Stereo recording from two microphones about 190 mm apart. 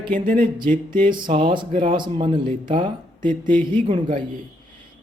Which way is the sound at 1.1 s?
25° right (ahead or behind).